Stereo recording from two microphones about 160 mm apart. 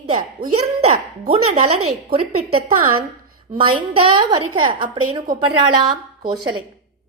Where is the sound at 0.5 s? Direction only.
40° right (ahead or behind).